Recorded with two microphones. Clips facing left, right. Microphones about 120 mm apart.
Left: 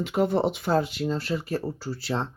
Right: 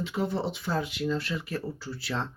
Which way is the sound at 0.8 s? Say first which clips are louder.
Left 2 dB; 35° left (ahead or behind).